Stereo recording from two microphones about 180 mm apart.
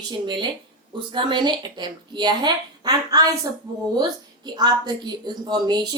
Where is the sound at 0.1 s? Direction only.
25° right (ahead or behind).